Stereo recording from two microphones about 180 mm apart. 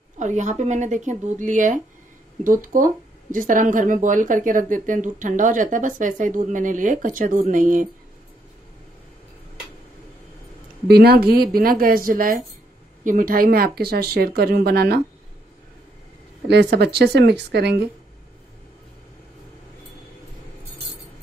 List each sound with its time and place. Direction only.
0.2 s speech: 45° right (ahead or behind)
10.9 s speech: 60° right (ahead or behind)
16.4 s speech: 65° right (ahead or behind)